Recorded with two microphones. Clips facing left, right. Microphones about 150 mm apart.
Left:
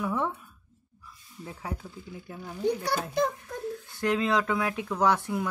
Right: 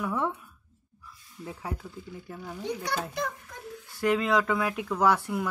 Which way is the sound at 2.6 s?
35° left (ahead or behind).